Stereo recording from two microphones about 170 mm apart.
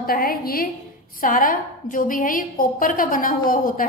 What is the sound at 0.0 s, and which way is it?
A woman's voice, 60° left (ahead or behind).